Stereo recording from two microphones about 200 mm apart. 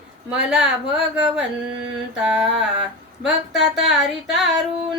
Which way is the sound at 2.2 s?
5° right (ahead or behind).